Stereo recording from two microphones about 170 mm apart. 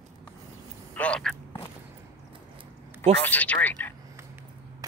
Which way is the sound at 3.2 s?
10° left (ahead or behind).